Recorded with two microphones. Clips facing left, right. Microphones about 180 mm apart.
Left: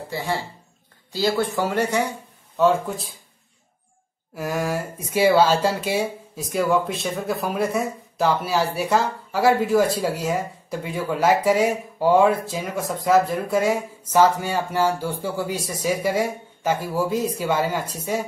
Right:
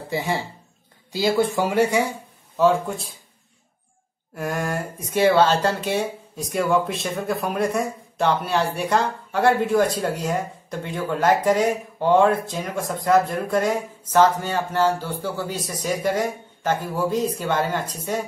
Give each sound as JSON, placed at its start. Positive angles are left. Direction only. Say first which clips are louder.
{"t": 0.1, "sound": "speech", "louder": "right 2 dB", "side_deg": -15}
{"t": 2.5, "sound": "speech", "louder": "even", "side_deg": 0}
{"t": 4.4, "sound": "speech", "louder": "left 1 dB", "side_deg": 0}